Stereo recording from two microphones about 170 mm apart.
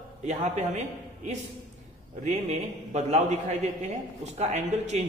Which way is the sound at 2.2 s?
40° right (ahead or behind).